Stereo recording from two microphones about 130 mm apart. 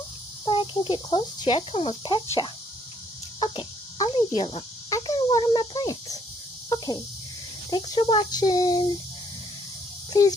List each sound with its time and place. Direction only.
0.5 s speech: 40° left (ahead or behind)
3.3 s a sound: 40° left (ahead or behind)
4.4 s a child's voice: 40° left (ahead or behind)
4.9 s a sound: 30° left (ahead or behind)
7.7 s speech: 35° left (ahead or behind)
10.1 s a child's voice: 25° left (ahead or behind)